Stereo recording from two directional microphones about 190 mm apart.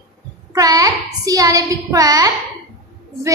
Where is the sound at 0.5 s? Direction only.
20° right (ahead or behind).